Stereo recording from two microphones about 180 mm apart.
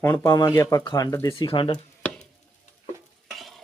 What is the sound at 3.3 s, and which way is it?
Stir, centre (ahead or behind).